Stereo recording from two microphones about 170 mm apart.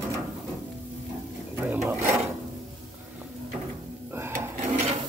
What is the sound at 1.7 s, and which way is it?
Filing, 10° right (ahead or behind).